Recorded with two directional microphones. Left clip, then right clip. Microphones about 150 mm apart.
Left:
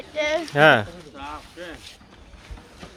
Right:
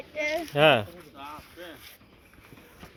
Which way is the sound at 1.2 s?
10° right (ahead or behind).